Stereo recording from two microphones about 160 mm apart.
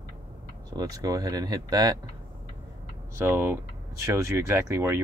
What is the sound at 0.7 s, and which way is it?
Speech, 20° right (ahead or behind).